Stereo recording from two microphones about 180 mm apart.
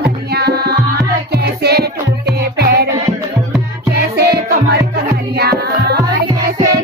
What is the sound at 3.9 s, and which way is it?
Music, 60° right (ahead or behind).